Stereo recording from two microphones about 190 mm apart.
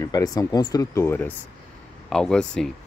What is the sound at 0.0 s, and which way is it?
Speech, 20° left (ahead or behind).